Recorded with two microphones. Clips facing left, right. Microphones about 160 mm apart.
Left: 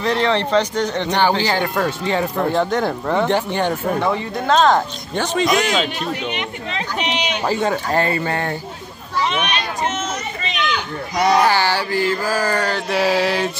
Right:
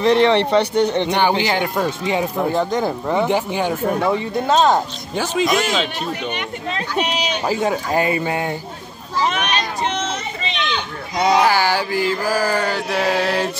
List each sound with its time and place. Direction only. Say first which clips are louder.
0.0 s speech: right 4 dB; 20° right (ahead or behind); by 5.9 s centre (ahead or behind)
7.4 s speech: left 1 dB; 5° right (ahead or behind)
9.2 s a sound: right 1 dB; 40° right (ahead or behind)
10.4 s a sound: left 2 dB; 25° right (ahead or behind)
11.3 s speech: right 2 dB; 10° right (ahead or behind)
13.0 s mantra: left 1 dB; 5° left (ahead or behind)